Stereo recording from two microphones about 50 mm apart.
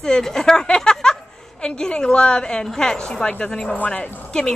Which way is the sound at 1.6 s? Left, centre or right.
Centre.